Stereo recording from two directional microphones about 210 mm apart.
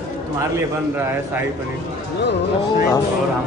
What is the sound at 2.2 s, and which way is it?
Speech, 55° left (ahead or behind).